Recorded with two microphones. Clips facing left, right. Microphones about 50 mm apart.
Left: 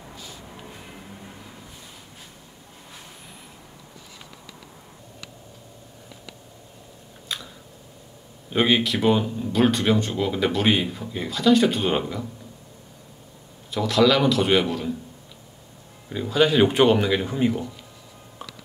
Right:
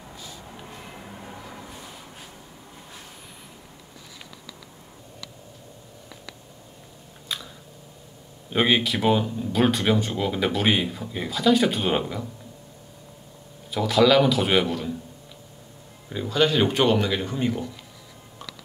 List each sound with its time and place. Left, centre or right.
0.9 s vehicle: centre
7.3 s chewing: centre
8.5 s speech: centre
13.7 s speech: centre
16.1 s speech: centre